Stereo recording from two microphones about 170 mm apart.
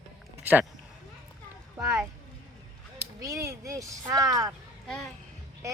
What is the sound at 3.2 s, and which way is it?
Speech, 20° right (ahead or behind).